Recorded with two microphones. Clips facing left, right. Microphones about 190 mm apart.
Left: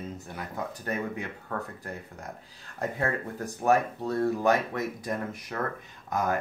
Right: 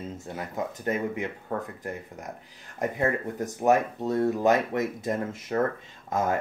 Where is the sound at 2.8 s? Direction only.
20° right (ahead or behind).